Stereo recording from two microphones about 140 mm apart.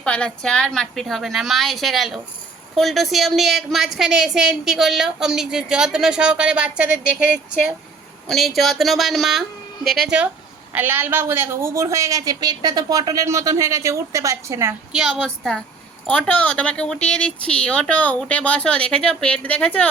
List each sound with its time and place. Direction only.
0.0 s a woman's voice: 5° left (ahead or behind)
10.7 s a woman's voice: 15° right (ahead or behind)
14.9 s a woman's voice: centre (ahead or behind)